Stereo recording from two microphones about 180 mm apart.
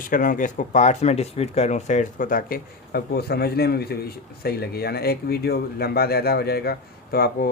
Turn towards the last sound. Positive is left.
turn(degrees=55)  # may be behind; listen again after turning